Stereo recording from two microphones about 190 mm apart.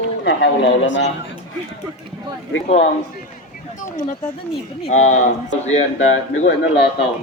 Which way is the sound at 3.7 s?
40° left (ahead or behind).